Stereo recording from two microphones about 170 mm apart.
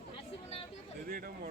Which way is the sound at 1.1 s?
60° right (ahead or behind).